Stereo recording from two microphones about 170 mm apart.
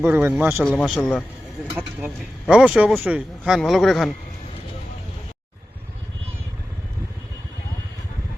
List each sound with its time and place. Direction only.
0.0 s speech: 10° right (ahead or behind)
0.6 s speech: 5° left (ahead or behind)
1.7 s speech: 10° right (ahead or behind)